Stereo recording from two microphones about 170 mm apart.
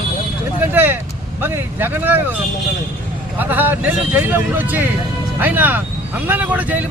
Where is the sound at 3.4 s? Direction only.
10° right (ahead or behind).